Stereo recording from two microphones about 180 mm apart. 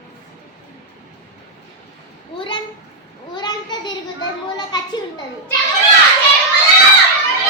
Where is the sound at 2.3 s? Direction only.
25° left (ahead or behind).